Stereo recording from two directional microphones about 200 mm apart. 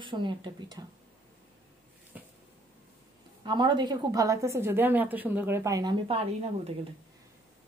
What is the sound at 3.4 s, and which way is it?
A woman's voice, 25° right (ahead or behind).